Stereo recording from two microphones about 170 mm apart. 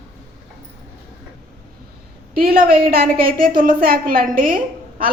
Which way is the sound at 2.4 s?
60° right (ahead or behind).